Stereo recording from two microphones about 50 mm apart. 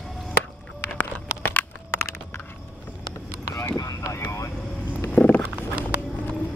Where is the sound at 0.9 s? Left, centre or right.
Left.